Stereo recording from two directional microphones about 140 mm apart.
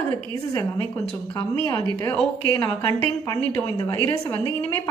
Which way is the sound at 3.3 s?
10° left (ahead or behind).